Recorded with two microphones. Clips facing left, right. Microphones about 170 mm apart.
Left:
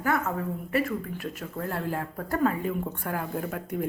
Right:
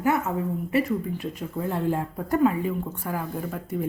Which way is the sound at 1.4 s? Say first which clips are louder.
Right 5 dB; 15° right (ahead or behind).